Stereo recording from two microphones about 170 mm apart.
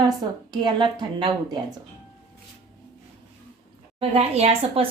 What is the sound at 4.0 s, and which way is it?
Speech, 35° right (ahead or behind).